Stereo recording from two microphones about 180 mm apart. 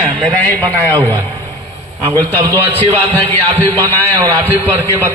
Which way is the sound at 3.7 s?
10° left (ahead or behind).